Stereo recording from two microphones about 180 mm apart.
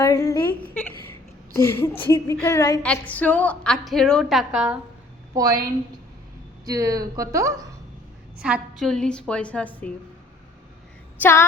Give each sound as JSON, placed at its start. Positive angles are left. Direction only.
{"t": 0.0, "sound": "a sound", "side_deg": 20}
{"t": 1.5, "sound": "a woman's voice", "side_deg": 15}
{"t": 2.8, "sound": "a woman's voice", "side_deg": 5}
{"t": 5.3, "sound": "a woman's voice", "side_deg": -20}
{"t": 6.7, "sound": "a woman's voice", "side_deg": -20}
{"t": 8.4, "sound": "a woman's voice", "side_deg": -5}
{"t": 11.2, "sound": "a woman's voice", "side_deg": 15}